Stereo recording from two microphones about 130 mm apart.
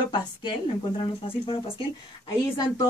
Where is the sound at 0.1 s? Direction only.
40° left (ahead or behind).